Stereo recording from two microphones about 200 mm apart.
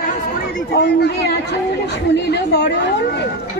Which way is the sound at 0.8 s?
60° left (ahead or behind).